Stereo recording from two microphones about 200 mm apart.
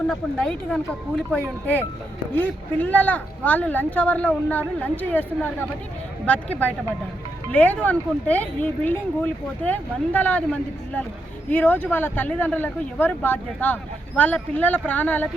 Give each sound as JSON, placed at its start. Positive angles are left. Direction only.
{"t": 0.1, "sound": "speech", "side_deg": 0}